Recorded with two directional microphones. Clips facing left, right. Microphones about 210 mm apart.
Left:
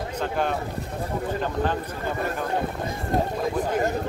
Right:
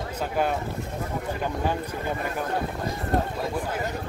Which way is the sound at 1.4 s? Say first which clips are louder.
Even; 10° right (ahead or behind).